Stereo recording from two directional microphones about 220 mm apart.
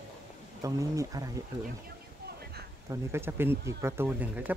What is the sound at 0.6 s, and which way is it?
Speech, 15° right (ahead or behind).